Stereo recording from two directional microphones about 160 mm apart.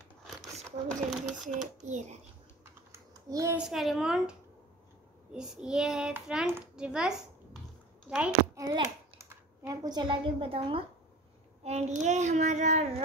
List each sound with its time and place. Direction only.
0.9 s a sound: 50° right (ahead or behind)
1.9 s speech: 50° right (ahead or behind)
2.6 s typing: 20° right (ahead or behind)
3.5 s a child's voice: centre (ahead or behind)
8.5 s a child's voice: 25° right (ahead or behind); by 12.9 s 45° right (ahead or behind)